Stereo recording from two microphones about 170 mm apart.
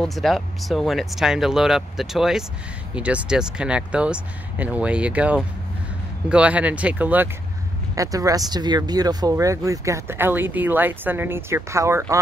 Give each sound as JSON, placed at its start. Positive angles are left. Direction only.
{"t": 0.0, "sound": "speech", "side_deg": 0}
{"t": 7.9, "sound": "speech", "side_deg": -20}